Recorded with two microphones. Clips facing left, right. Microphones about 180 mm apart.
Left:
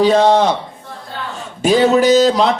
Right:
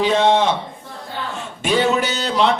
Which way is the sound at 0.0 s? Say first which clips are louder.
Left 4 dB; 40° left (ahead or behind).